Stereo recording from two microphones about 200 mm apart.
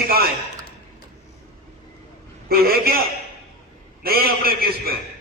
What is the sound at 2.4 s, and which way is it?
Speech, 50° right (ahead or behind).